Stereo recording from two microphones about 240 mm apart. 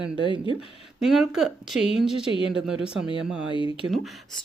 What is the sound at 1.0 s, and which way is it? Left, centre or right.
Speech, centre.